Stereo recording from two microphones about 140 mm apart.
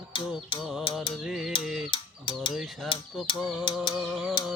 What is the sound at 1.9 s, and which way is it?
Mechanisms, 35° left (ahead or behind).